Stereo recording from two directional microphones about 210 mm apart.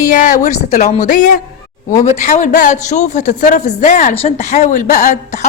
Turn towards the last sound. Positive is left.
turn(degrees=35)  # may be behind; listen again after turning